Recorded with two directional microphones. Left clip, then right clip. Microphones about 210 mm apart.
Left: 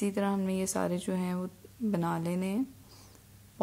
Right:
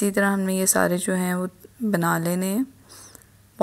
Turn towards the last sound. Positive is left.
turn(degrees=-20)  # may be behind; listen again after turning